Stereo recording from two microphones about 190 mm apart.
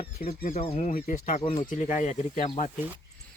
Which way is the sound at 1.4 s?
25° left (ahead or behind).